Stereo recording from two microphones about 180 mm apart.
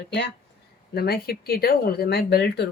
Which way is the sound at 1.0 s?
60° left (ahead or behind).